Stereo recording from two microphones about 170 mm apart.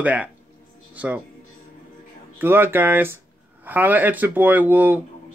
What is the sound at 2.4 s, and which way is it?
Speech, 15° right (ahead or behind).